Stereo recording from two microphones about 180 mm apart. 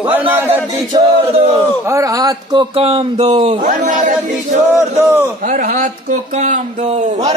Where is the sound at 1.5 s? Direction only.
15° right (ahead or behind).